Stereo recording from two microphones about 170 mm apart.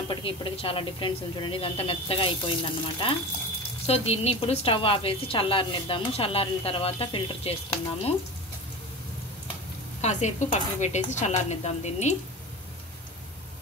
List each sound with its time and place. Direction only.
0.1 s a woman's voice: 30° left (ahead or behind)
10.0 s speech: 45° left (ahead or behind)